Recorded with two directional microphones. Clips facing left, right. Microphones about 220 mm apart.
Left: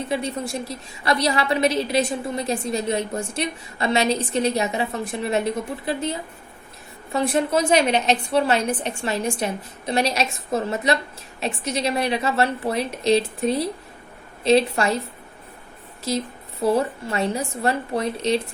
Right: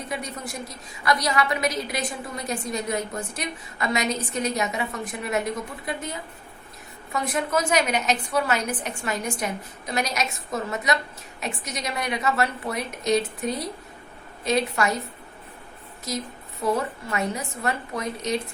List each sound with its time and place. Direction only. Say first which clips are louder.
0.1 s a woman's voice: left 6 dB; 30° left (ahead or behind)
16.0 s a woman's voice: left 6 dB; 30° left (ahead or behind)